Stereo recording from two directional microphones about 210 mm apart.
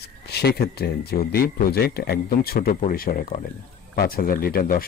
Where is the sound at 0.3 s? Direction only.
50° left (ahead or behind).